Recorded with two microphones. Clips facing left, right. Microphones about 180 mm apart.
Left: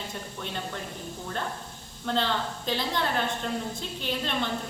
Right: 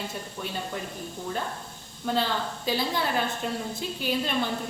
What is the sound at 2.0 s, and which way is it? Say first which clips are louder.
A woman's voice: right 1 dB; 5° right (ahead or behind).